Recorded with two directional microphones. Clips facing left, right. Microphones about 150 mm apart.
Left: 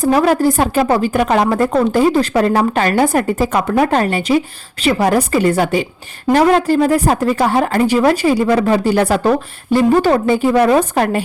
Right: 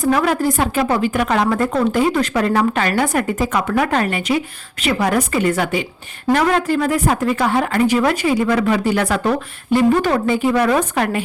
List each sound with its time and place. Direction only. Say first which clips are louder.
0.0 s a woman's voice: left 4 dB; 35° left (ahead or behind)